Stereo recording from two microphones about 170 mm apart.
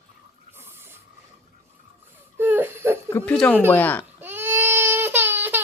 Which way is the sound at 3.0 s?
10° left (ahead or behind).